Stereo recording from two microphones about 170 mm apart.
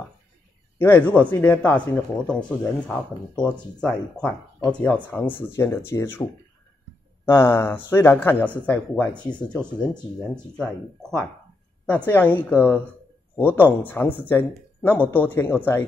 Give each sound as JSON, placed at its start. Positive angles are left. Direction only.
{"t": 0.7, "sound": "speech", "side_deg": 10}
{"t": 7.2, "sound": "speech", "side_deg": 15}